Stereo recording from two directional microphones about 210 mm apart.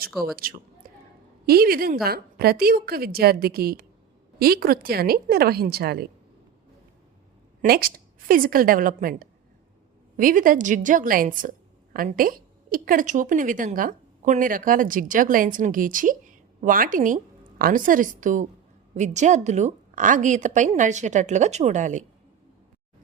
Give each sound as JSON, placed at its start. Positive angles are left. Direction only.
{"t": 0.1, "sound": "a man's voice", "side_deg": 0}
{"t": 1.5, "sound": "a woman's voice", "side_deg": -45}
{"t": 7.6, "sound": "a woman's voice", "side_deg": -45}